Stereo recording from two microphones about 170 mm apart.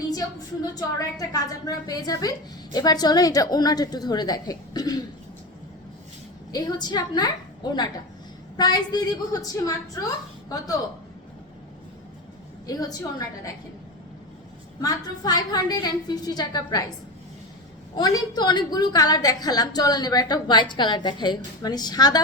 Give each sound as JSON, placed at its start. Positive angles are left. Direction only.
{"t": 0.1, "sound": "a woman's voice", "side_deg": 20}
{"t": 6.5, "sound": "a woman's voice", "side_deg": 25}
{"t": 12.6, "sound": "a woman's voice", "side_deg": 20}
{"t": 14.8, "sound": "a woman's voice", "side_deg": 20}
{"t": 17.9, "sound": "a woman's voice", "side_deg": 25}